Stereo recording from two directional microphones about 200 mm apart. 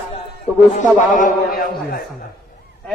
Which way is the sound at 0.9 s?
40° left (ahead or behind).